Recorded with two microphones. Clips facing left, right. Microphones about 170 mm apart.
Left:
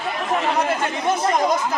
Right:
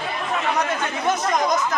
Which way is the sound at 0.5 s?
30° left (ahead or behind).